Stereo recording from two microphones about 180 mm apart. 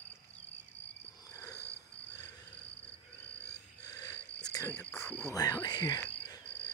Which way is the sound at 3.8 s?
20° left (ahead or behind).